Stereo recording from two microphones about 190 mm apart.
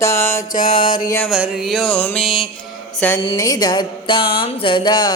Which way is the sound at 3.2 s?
20° left (ahead or behind).